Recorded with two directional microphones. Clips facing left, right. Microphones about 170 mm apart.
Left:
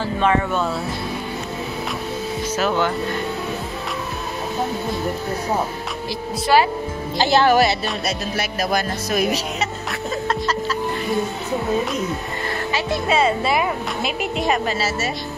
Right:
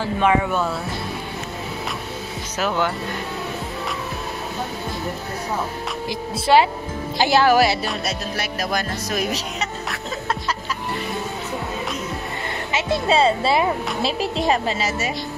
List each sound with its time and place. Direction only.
0.0 s a woman's voice: 10° right (ahead or behind)
6.4 s speech: 20° right (ahead or behind)
7.2 s a woman's voice: 10° right (ahead or behind); by 9.9 s 5° left (ahead or behind)
12.7 s speech: 30° right (ahead or behind)